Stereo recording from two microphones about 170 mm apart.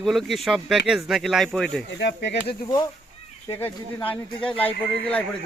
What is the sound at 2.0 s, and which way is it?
Speech, 90° left.